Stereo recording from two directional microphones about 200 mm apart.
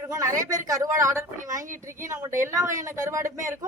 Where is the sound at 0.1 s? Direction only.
15° right (ahead or behind).